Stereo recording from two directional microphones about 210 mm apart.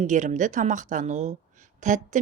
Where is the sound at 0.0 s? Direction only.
35° right (ahead or behind).